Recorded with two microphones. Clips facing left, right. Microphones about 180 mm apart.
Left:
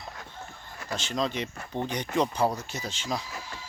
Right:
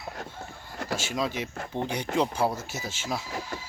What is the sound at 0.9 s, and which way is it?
Speech, 5° right (ahead or behind).